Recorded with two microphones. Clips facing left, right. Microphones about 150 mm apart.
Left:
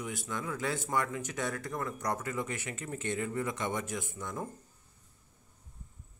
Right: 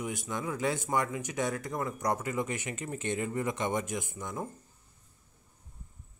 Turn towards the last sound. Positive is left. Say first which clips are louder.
# right 2 dB
turn(degrees=-15)  # may be behind; listen again after turning